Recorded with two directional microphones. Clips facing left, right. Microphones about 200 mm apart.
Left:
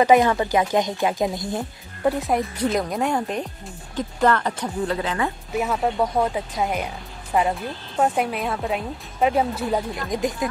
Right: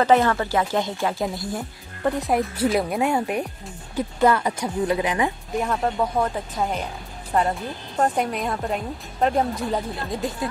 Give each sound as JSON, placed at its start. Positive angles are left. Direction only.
{"t": 0.0, "sound": "speech", "side_deg": 15}
{"t": 2.0, "sound": "speech", "side_deg": 0}
{"t": 5.5, "sound": "speech", "side_deg": 5}